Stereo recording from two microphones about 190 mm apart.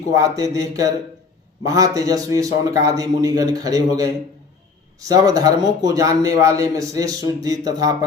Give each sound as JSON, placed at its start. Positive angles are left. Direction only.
{"t": 0.1, "sound": "a man's voice", "side_deg": -20}